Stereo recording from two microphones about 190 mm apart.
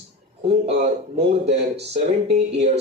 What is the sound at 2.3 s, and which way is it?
Speech, 35° right (ahead or behind).